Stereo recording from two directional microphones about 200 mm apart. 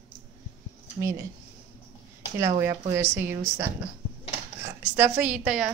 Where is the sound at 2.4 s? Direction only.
15° right (ahead or behind).